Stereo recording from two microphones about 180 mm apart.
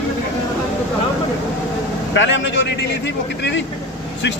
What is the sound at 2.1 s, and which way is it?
Speech, 90° left.